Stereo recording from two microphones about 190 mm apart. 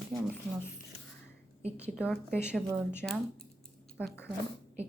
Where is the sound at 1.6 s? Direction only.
5° right (ahead or behind).